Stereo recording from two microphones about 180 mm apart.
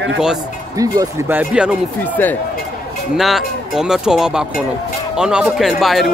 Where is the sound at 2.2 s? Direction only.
10° left (ahead or behind).